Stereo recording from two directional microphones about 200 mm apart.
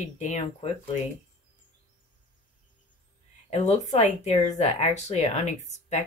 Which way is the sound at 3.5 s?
35° left (ahead or behind).